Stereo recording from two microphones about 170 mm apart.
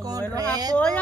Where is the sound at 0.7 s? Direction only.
10° left (ahead or behind).